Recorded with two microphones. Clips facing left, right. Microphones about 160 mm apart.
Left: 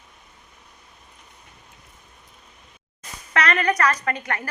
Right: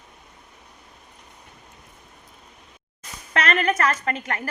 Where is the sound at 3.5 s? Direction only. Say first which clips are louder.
Even; 25° right (ahead or behind).